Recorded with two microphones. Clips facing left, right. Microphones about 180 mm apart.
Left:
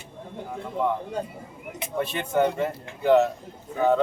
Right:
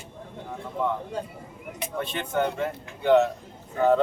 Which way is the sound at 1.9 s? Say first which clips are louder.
Left 3 dB; 10° left (ahead or behind).